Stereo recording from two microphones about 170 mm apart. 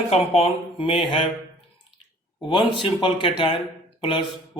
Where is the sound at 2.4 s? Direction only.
30° left (ahead or behind).